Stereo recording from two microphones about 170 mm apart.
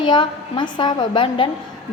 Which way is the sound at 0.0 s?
25° left (ahead or behind).